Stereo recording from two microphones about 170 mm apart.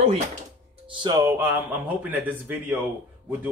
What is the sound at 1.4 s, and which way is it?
Speech, 10° right (ahead or behind).